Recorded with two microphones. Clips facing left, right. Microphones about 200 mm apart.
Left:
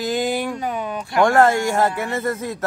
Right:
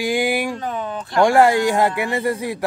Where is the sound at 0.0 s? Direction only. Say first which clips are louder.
Right 2 dB; 10° right (ahead or behind).